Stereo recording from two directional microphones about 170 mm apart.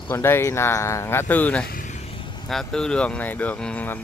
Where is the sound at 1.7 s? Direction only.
50° left (ahead or behind).